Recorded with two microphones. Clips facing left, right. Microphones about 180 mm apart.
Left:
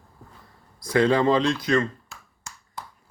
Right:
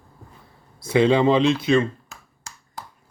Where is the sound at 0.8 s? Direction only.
25° right (ahead or behind).